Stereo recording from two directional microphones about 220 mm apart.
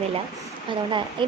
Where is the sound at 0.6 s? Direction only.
20° right (ahead or behind).